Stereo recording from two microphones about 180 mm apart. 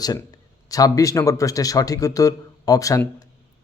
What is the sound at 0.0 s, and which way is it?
Speech, 20° left (ahead or behind).